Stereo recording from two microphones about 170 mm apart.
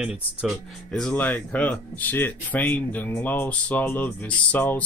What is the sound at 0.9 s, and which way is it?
Speech, 5° left (ahead or behind).